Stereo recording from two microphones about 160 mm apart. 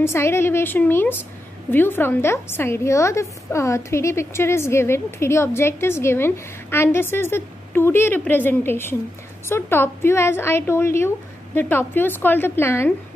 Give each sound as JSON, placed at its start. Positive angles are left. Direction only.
{"t": 0.0, "sound": "a woman's voice", "side_deg": 15}